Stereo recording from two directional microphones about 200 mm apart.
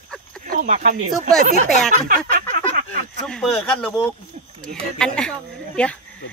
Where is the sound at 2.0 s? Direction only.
45° right (ahead or behind).